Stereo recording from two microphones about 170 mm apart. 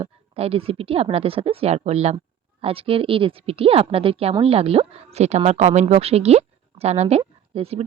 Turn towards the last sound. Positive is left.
turn(degrees=-35)  # may be behind; listen again after turning